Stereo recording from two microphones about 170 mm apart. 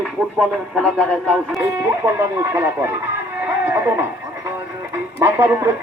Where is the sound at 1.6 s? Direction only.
15° right (ahead or behind).